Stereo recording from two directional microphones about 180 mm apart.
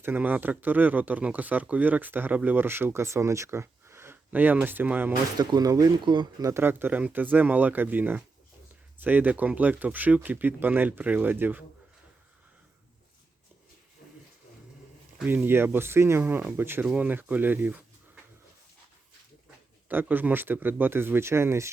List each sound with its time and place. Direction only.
0.0 s speech: 10° right (ahead or behind)
5.4 s speech: 20° right (ahead or behind)
6.5 s speech: 10° right (ahead or behind)
15.2 s speech: 10° right (ahead or behind)
19.9 s speech: 10° right (ahead or behind)